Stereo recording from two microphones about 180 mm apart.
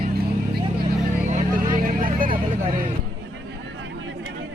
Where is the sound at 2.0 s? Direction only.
50° right (ahead or behind).